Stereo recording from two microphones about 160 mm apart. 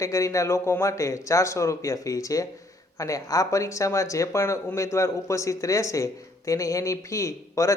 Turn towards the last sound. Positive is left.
turn(degrees=20)  # may be behind; listen again after turning